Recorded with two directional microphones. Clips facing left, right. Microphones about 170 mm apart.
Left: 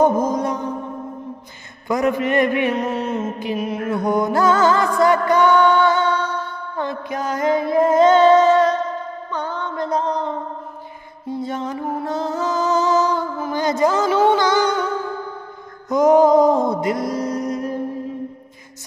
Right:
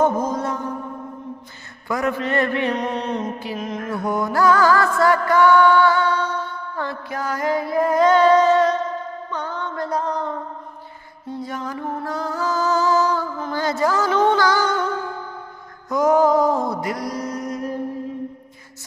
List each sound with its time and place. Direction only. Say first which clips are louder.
0.0 s mantra: left 3 dB; 10° left (ahead or behind)
1.9 s a man's voice: left 4 dB; 20° left (ahead or behind)
3.9 s music: left 4 dB; 20° left (ahead or behind)
11.4 s music: left 3 dB; 25° left (ahead or behind)
11.8 s a man's voice: left 3 dB; 10° left (ahead or behind)
12.1 s music: left 2 dB; 20° left (ahead or behind)
13.4 s a sound: left 5 dB; 15° left (ahead or behind)
14.3 s music: left 2 dB; 20° left (ahead or behind)
15.9 s music: left 4 dB; 20° left (ahead or behind)